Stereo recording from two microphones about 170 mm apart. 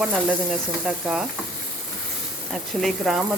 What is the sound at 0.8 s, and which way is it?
Sizzle, 5° right (ahead or behind).